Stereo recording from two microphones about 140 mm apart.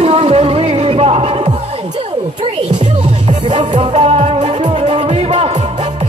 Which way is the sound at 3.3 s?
35° right (ahead or behind).